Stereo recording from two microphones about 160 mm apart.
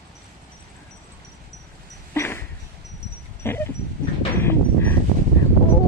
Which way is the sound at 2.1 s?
15° left (ahead or behind).